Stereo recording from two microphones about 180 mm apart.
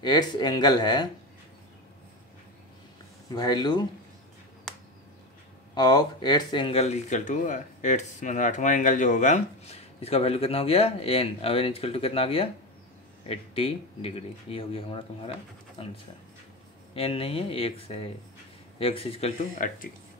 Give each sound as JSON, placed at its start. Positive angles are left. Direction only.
{"t": 0.0, "sound": "speech", "side_deg": 25}
{"t": 3.3, "sound": "speech", "side_deg": 20}
{"t": 4.7, "sound": "a sound", "side_deg": 0}
{"t": 5.8, "sound": "speech", "side_deg": 25}
{"t": 19.6, "sound": "speech", "side_deg": 45}